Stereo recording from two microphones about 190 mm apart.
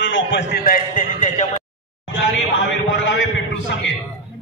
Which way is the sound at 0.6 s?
45° left (ahead or behind).